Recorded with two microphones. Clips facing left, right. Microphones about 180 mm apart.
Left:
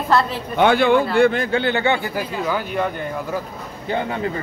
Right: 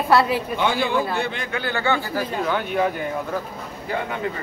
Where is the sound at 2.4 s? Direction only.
5° left (ahead or behind).